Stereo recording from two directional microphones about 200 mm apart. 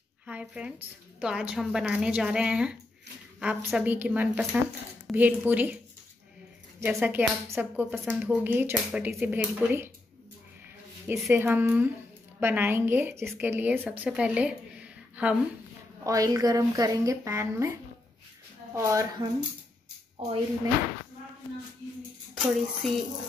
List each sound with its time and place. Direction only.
0.3 s a woman's voice: 5° right (ahead or behind)
6.8 s a woman's voice: 10° right (ahead or behind)
11.1 s a woman's voice: 10° right (ahead or behind)
16.0 s a woman's voice: 15° right (ahead or behind)
18.8 s a woman's voice: 15° right (ahead or behind)
22.4 s a woman's voice: centre (ahead or behind)